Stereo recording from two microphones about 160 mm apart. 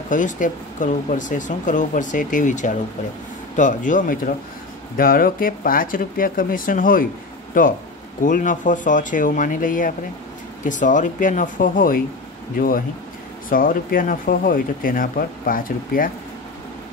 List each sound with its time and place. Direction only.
0.1 s speech: 55° left (ahead or behind)
8.2 s speech: 55° left (ahead or behind)